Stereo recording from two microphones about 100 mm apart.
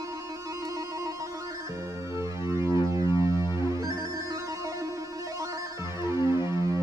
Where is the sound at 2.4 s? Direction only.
30° right (ahead or behind).